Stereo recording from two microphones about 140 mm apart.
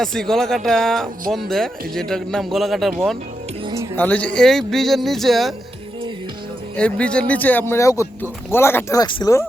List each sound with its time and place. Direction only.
0.0 s a man's voice: 5° left (ahead or behind)
3.9 s a man's voice: 10° left (ahead or behind)
6.7 s speech: 10° left (ahead or behind)
9.0 s speech: 35° left (ahead or behind)